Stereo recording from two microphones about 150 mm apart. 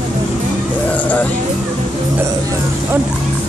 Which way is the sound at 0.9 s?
10° left (ahead or behind).